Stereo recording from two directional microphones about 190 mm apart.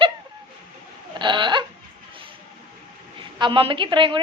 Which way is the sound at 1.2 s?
25° right (ahead or behind).